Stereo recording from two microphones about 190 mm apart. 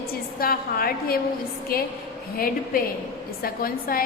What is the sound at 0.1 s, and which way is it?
A woman's voice, 50° left (ahead or behind).